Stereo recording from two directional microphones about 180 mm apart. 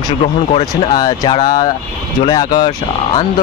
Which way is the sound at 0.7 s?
20° left (ahead or behind).